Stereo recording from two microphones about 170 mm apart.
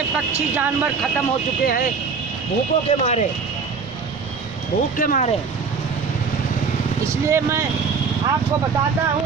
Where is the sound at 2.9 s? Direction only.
40° left (ahead or behind).